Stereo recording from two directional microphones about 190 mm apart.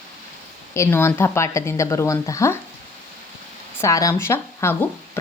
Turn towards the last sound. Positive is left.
turn(degrees=10)  # may be behind; listen again after turning